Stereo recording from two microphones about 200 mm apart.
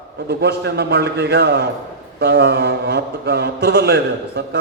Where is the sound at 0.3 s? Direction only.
55° right (ahead or behind).